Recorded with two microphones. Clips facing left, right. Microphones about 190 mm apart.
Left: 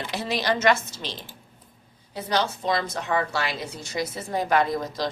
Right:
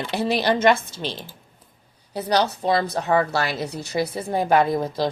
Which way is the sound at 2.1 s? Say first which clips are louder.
Right 4 dB; 35° right (ahead or behind).